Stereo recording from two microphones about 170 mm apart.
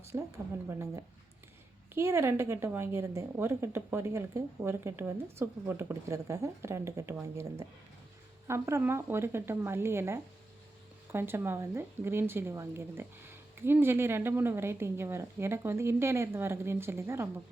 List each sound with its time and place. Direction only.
0.1 s a woman's voice: 20° right (ahead or behind)
8.4 s a woman's voice: 15° right (ahead or behind)